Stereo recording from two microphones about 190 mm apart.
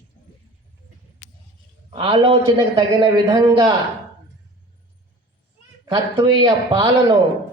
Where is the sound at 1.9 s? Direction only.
30° right (ahead or behind).